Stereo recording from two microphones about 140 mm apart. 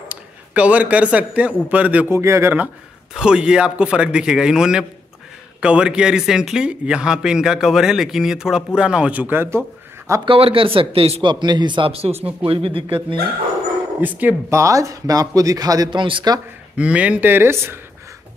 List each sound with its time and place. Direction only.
0.1 s a man's voice: 10° right (ahead or behind)
10.2 s a man's voice: 40° right (ahead or behind)
14.0 s speech: 10° right (ahead or behind); by 16.3 s 35° right (ahead or behind)
16.7 s a man's voice: 10° right (ahead or behind)